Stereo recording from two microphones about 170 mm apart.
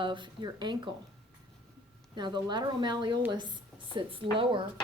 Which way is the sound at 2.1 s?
25° right (ahead or behind).